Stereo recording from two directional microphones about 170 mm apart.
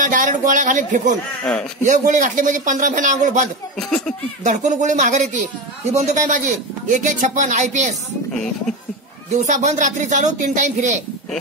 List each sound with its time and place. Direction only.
0.0 s a man's voice: 50° right (ahead or behind)
1.4 s speech: 5° left (ahead or behind)
1.8 s speech: 50° right (ahead or behind)
3.7 s speech: 5° left (ahead or behind)
4.4 s speech: 45° right (ahead or behind)
8.3 s speech: 5° left (ahead or behind)
9.3 s speech: 45° right (ahead or behind)